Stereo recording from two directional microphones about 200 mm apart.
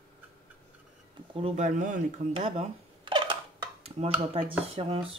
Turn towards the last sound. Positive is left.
turn(degrees=-25)  # may be behind; listen again after turning